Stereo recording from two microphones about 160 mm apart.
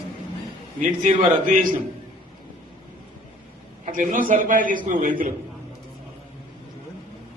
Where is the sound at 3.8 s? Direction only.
55° right (ahead or behind).